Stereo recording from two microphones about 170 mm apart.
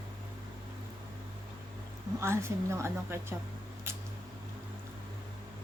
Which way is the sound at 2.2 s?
15° right (ahead or behind).